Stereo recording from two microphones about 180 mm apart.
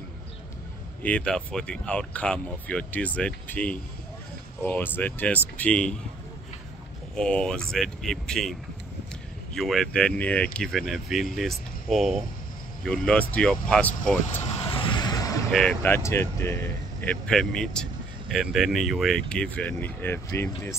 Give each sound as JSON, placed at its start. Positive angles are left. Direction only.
{"t": 1.0, "sound": "speech", "side_deg": 5}
{"t": 7.2, "sound": "speech", "side_deg": 5}
{"t": 14.7, "sound": "vehicle", "side_deg": 25}
{"t": 15.5, "sound": "speech", "side_deg": 5}